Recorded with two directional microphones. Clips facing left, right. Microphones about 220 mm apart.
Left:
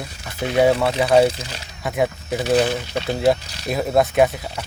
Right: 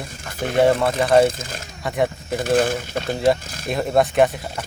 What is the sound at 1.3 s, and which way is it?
Speech, 50° right (ahead or behind).